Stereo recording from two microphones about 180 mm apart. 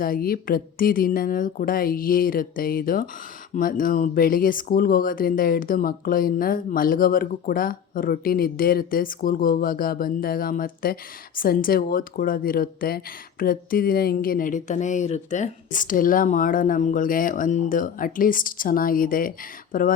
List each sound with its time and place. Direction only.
0.0 s speech: 55° left (ahead or behind)